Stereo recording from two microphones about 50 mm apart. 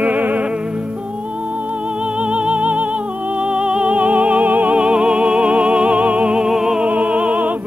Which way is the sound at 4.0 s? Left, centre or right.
Right.